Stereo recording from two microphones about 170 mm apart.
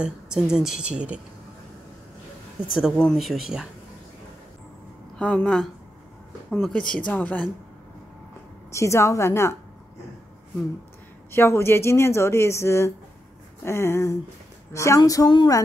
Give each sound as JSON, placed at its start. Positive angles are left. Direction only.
{"t": 0.0, "sound": "speech", "side_deg": -5}
{"t": 2.7, "sound": "speech", "side_deg": 0}
{"t": 5.2, "sound": "speech", "side_deg": 5}
{"t": 8.7, "sound": "speech", "side_deg": 15}
{"t": 11.3, "sound": "speech", "side_deg": 15}
{"t": 14.7, "sound": "a sound", "side_deg": 20}